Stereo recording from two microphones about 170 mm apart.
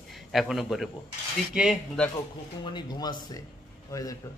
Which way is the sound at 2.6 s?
25° left (ahead or behind).